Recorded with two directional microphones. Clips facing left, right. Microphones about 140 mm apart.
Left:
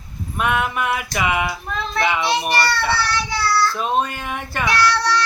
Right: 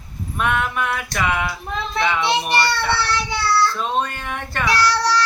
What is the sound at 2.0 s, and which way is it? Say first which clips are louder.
Child singing: even; 10° left (ahead or behind).